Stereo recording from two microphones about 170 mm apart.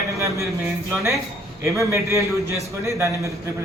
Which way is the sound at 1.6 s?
15° right (ahead or behind).